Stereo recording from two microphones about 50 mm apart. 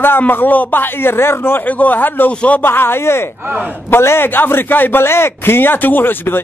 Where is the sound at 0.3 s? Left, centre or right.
Left.